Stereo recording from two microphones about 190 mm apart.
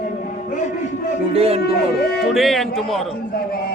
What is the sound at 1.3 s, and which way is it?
Speech, 30° right (ahead or behind).